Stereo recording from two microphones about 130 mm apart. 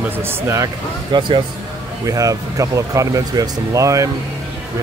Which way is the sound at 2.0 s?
25° right (ahead or behind).